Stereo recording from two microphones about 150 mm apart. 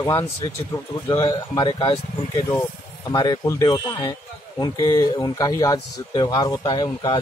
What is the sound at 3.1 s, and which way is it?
Speech, 30° left (ahead or behind).